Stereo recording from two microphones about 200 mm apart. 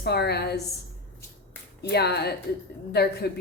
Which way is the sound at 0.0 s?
55° left (ahead or behind).